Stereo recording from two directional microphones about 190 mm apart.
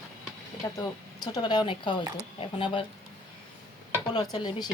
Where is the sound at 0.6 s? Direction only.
20° left (ahead or behind).